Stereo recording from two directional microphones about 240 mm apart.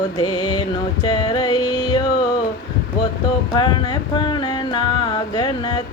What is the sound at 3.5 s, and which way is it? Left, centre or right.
Music, centre.